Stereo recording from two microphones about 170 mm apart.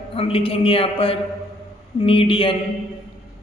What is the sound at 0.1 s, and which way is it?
A man's voice, 35° left (ahead or behind).